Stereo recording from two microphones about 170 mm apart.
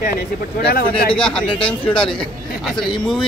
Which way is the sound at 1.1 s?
5° left (ahead or behind).